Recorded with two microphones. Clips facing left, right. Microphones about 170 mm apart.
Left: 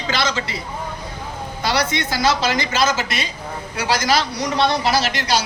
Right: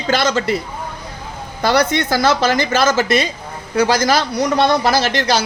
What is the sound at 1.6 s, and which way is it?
A woman's voice, 50° right (ahead or behind).